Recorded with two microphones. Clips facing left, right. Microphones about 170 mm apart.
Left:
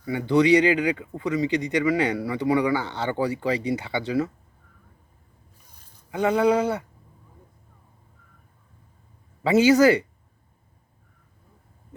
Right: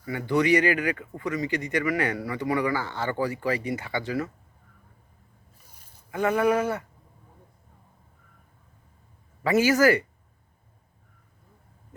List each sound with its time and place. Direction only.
0.0 s speech: 20° left (ahead or behind)
6.1 s sheep: 15° left (ahead or behind)
9.4 s speech: 20° left (ahead or behind)